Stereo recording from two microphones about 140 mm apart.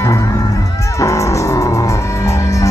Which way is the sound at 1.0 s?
20° left (ahead or behind).